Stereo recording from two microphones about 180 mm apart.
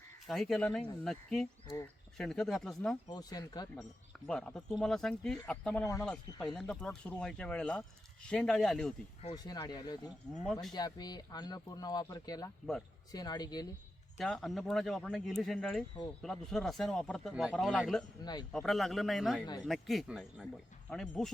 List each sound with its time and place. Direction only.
0.3 s speech: centre (ahead or behind)
3.1 s speech: 20° left (ahead or behind)
4.3 s speech: 5° left (ahead or behind)
9.3 s speech: 20° left (ahead or behind)
10.4 s speech: centre (ahead or behind)
10.7 s speech: 20° left (ahead or behind)
14.2 s speech: centre (ahead or behind)